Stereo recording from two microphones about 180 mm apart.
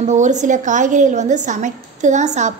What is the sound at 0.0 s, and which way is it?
A woman's voice, 40° right (ahead or behind).